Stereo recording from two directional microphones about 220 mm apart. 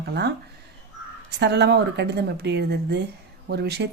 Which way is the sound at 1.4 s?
50° right (ahead or behind).